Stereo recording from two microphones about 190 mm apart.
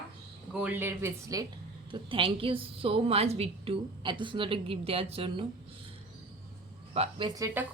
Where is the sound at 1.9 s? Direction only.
25° right (ahead or behind).